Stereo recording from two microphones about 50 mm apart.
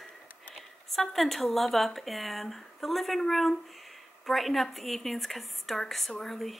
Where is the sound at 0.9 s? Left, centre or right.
Centre.